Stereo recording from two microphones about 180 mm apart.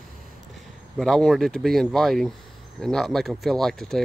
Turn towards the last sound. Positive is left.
turn(degrees=0)  # may be behind; listen again after turning